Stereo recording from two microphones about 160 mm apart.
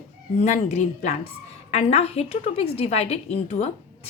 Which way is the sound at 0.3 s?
45° left (ahead or behind).